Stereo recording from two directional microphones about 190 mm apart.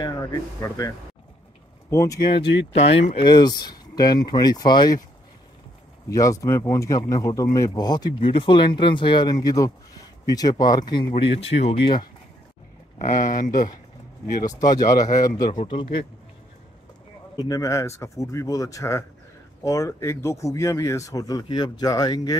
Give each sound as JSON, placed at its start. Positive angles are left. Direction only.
{"t": 0.0, "sound": "speech", "side_deg": 20}
{"t": 2.7, "sound": "speech", "side_deg": 30}
{"t": 6.0, "sound": "speech", "side_deg": 15}
{"t": 13.0, "sound": "speech", "side_deg": 40}
{"t": 14.4, "sound": "speech", "side_deg": 20}
{"t": 17.4, "sound": "speech", "side_deg": 20}